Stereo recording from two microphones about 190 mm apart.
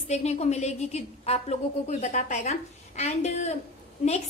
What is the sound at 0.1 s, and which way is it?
A woman's voice, 35° left (ahead or behind).